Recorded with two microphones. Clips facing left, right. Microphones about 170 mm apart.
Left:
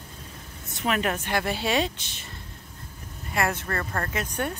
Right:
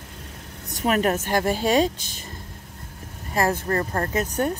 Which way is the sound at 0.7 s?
40° right (ahead or behind).